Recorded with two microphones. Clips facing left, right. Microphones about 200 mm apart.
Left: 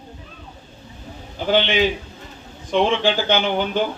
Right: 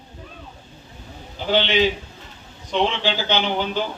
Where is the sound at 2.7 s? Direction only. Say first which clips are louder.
Left 4 dB; 50° left (ahead or behind).